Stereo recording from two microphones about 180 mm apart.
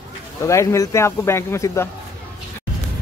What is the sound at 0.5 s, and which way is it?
Speech, 15° left (ahead or behind).